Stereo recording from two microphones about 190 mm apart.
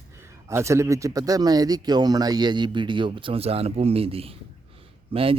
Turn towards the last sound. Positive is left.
turn(degrees=-30)  # may be behind; listen again after turning